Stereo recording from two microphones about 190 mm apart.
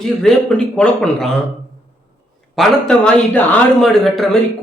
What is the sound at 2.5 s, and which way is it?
A man's voice, centre (ahead or behind).